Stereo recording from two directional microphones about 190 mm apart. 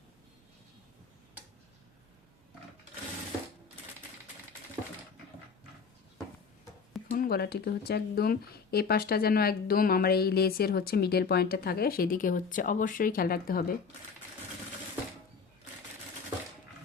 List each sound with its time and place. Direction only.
7.1 s speech: 50° left (ahead or behind)